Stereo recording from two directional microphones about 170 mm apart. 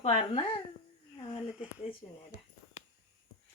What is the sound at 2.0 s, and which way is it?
Speech, 20° left (ahead or behind).